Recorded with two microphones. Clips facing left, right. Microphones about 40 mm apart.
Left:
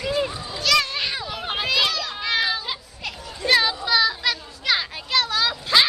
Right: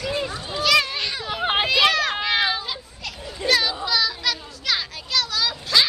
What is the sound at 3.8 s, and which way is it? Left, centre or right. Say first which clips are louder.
Children playing: left 2 dB; centre.